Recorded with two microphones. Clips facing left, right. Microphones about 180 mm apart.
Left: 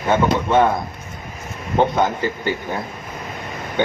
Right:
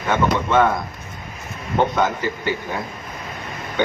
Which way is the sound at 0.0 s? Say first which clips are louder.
Left 2 dB; 30° left (ahead or behind).